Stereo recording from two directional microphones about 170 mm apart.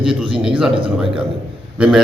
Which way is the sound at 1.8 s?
5° right (ahead or behind).